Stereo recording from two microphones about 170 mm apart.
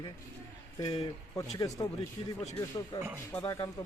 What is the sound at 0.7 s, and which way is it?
Speech, 20° left (ahead or behind).